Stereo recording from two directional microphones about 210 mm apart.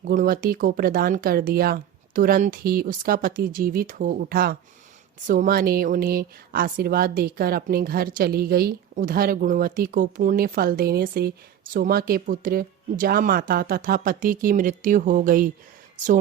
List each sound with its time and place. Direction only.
0.0 s a woman's voice: 40° right (ahead or behind)